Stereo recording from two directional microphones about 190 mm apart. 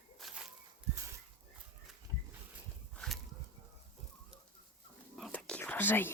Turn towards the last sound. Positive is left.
turn(degrees=10)  # may be behind; listen again after turning